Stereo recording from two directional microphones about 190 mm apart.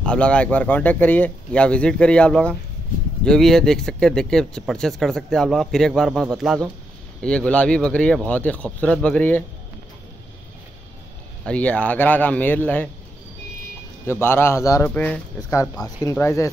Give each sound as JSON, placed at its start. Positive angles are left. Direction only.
{"t": 0.0, "sound": "speech", "side_deg": 5}
{"t": 11.4, "sound": "speech", "side_deg": 5}
{"t": 14.2, "sound": "speech", "side_deg": 10}